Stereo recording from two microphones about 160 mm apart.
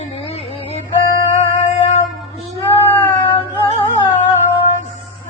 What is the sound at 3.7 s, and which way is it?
Music, 35° left (ahead or behind).